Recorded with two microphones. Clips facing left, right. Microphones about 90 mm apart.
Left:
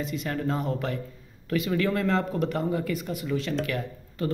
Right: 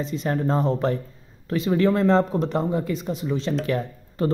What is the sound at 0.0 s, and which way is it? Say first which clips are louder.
Speech: right 5 dB; 30° right (ahead or behind).